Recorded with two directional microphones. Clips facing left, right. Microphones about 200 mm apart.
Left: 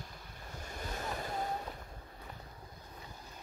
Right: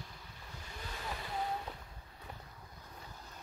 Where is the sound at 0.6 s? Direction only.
45° left (ahead or behind).